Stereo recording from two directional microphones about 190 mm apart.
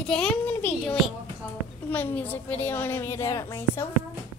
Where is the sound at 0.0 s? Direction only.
5° left (ahead or behind).